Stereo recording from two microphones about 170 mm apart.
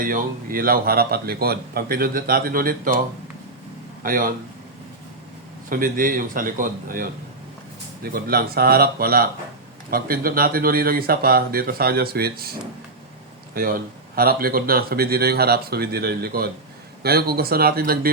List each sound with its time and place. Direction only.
0.0 s speech: 55° right (ahead or behind)
4.0 s speech: 55° right (ahead or behind)
5.6 s speech: 55° right (ahead or behind)
13.5 s speech: 60° right (ahead or behind)